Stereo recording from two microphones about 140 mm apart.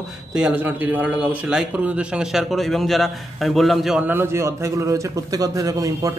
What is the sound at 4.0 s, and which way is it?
A man's voice, 15° right (ahead or behind).